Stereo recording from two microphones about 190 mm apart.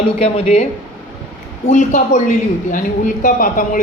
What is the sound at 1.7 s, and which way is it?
A man's voice, 40° left (ahead or behind).